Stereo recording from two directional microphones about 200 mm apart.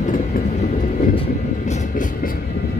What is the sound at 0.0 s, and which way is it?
Train, 40° left (ahead or behind).